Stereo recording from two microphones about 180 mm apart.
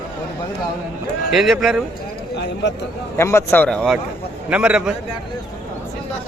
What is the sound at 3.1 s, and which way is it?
A man's voice, 15° left (ahead or behind).